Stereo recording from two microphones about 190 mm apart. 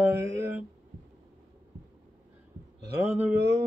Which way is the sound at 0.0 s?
10° right (ahead or behind).